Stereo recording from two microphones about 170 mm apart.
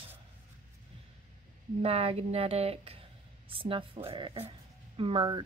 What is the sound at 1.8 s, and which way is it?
Speech, 35° right (ahead or behind).